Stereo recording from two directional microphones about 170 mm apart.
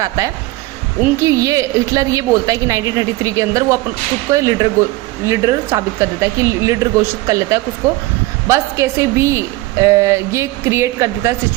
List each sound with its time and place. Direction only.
0.2 s a woman's voice: 20° right (ahead or behind)